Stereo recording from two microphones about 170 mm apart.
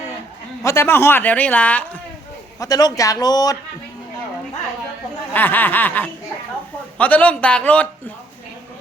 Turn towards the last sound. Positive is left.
turn(degrees=10)  # may be behind; listen again after turning